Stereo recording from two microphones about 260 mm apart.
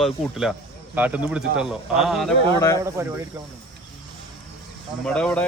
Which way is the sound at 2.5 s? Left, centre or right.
Centre.